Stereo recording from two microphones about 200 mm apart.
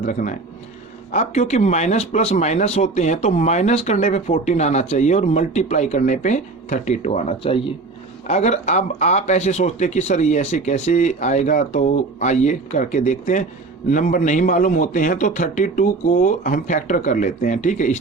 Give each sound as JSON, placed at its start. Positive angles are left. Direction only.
{"t": 0.0, "sound": "speech", "side_deg": 40}